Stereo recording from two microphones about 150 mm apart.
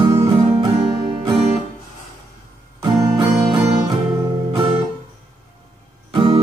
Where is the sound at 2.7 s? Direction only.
25° right (ahead or behind).